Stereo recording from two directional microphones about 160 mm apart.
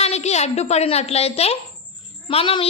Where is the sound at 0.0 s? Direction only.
45° left (ahead or behind).